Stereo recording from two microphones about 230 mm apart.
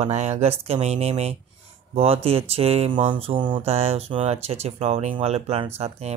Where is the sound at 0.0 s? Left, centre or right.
Right.